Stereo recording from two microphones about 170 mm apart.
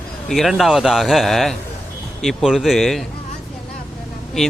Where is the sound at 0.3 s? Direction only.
Centre (ahead or behind).